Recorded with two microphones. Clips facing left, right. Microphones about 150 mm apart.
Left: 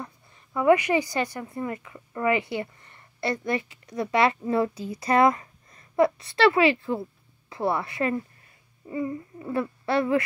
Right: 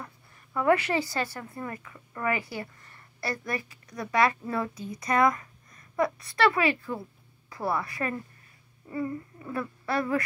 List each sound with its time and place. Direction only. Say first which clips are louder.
0.0 s a woman's voice: left 4 dB; 15° left (ahead or behind)
9.5 s speech: left 5 dB; 25° left (ahead or behind)